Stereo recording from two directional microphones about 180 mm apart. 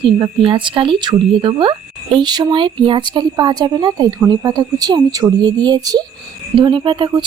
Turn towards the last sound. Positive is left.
turn(degrees=-25)  # may be behind; listen again after turning